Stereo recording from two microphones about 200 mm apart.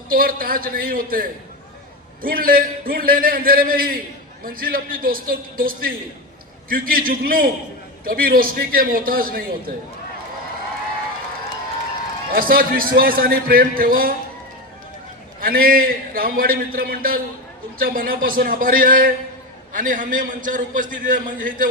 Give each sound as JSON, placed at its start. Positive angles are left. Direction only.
{"t": 0.1, "sound": "a man's voice", "side_deg": -45}
{"t": 12.3, "sound": "a man's voice", "side_deg": -45}
{"t": 15.4, "sound": "a man's voice", "side_deg": -45}